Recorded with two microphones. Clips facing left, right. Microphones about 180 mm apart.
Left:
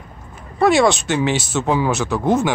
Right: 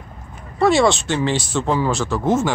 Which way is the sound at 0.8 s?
15° left (ahead or behind).